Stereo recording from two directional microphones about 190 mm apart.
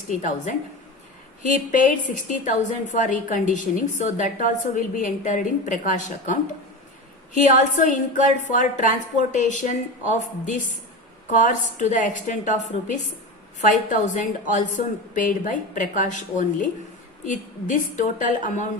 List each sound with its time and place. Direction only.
0.1 s a woman's voice: 40° left (ahead or behind)